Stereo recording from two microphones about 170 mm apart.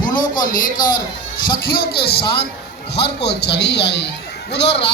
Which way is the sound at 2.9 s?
80° left.